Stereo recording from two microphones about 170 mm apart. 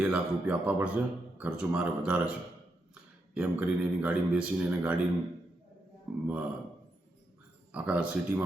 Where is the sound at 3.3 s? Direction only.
5° right (ahead or behind).